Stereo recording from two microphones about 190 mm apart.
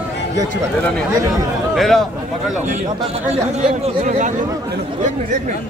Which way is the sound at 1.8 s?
Centre (ahead or behind).